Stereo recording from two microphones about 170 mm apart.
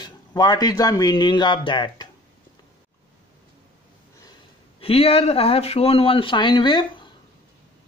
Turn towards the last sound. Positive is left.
turn(degrees=25)  # may be behind; listen again after turning